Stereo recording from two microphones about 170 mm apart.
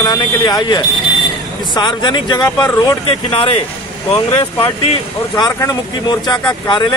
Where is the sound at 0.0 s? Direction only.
25° left (ahead or behind).